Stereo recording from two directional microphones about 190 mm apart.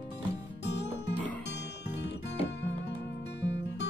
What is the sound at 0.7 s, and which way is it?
Music, 65° left (ahead or behind).